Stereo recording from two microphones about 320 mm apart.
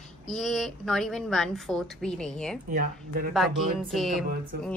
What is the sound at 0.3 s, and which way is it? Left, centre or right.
A woman's voice, centre.